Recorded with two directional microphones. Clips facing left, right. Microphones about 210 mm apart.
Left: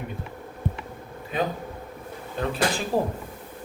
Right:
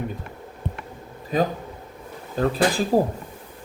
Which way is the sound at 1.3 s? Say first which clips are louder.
Right 4 dB; 40° right (ahead or behind).